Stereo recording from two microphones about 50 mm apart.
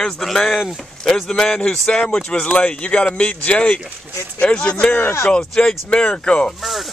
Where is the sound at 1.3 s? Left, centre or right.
Centre.